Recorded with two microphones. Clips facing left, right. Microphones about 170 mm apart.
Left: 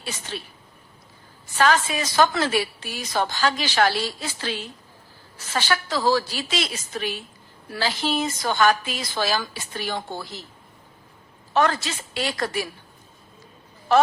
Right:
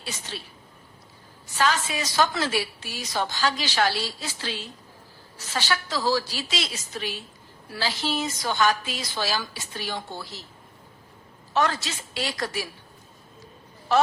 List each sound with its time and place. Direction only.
0.3 s a woman's voice: 50° left (ahead or behind)
1.5 s a woman's voice: 55° left (ahead or behind)
11.5 s a woman's voice: 55° left (ahead or behind)